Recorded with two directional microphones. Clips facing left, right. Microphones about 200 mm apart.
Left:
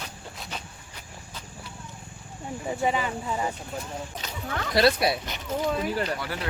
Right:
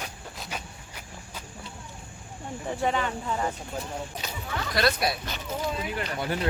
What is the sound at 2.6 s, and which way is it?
Speech, 5° left (ahead or behind).